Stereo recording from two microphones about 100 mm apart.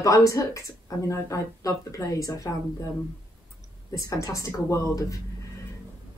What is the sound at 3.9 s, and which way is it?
Speech, 35° left (ahead or behind).